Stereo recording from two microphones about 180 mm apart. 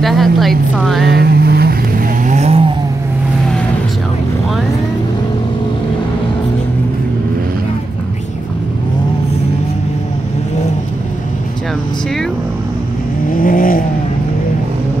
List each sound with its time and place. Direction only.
0.0 s a woman's voice: centre (ahead or behind)
1.0 s vehicle: 60° right (ahead or behind); by 2.7 s 35° right (ahead or behind)
13.3 s vehicle: 50° left (ahead or behind)